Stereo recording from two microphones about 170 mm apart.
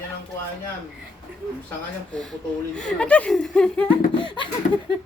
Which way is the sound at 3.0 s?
5° left (ahead or behind).